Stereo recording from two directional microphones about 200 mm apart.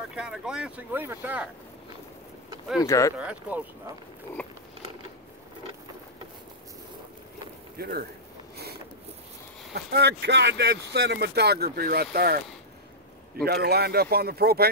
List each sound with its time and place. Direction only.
0.1 s speech: 5° right (ahead or behind)
2.8 s speech: 15° left (ahead or behind)
3.2 s speech: 5° right (ahead or behind)
4.4 s speech: 5° left (ahead or behind)
7.7 s speech: 50° right (ahead or behind)
9.8 s speech: 55° right (ahead or behind)
13.4 s speech: 50° right (ahead or behind)